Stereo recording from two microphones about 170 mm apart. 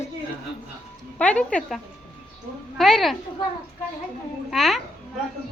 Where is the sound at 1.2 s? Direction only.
5° left (ahead or behind).